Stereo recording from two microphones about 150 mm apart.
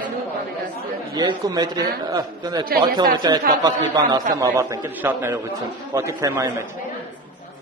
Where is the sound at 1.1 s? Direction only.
25° right (ahead or behind).